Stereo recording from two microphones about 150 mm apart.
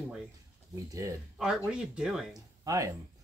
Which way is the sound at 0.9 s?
20° right (ahead or behind).